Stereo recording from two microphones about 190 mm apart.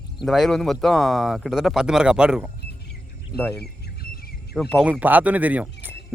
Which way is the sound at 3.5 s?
60° left (ahead or behind).